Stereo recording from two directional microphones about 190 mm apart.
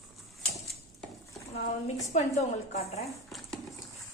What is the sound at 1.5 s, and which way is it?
A woman's voice, 35° left (ahead or behind).